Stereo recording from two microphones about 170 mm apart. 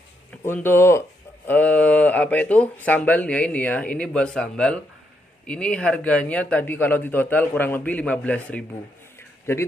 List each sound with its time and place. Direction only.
0.4 s speech: 10° left (ahead or behind)